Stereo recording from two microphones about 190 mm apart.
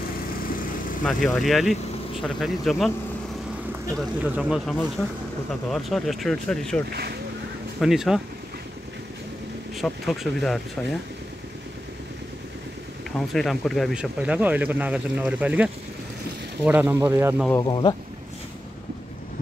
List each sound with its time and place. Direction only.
1.0 s speech: centre (ahead or behind)
3.9 s speech: 5° right (ahead or behind)
7.8 s speech: centre (ahead or behind)
9.8 s speech: centre (ahead or behind)
13.3 s speech: centre (ahead or behind)
17.5 s speech: 20° left (ahead or behind)